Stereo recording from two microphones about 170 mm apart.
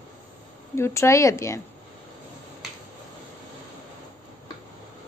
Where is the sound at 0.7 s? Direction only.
15° left (ahead or behind).